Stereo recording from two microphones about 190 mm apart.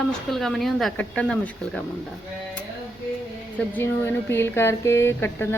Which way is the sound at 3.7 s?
10° left (ahead or behind).